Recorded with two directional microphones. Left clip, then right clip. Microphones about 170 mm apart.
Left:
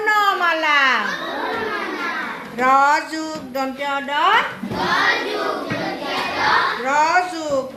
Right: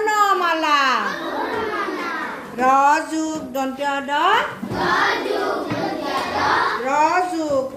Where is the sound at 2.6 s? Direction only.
25° right (ahead or behind).